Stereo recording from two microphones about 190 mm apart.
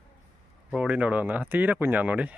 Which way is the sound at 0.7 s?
5° right (ahead or behind).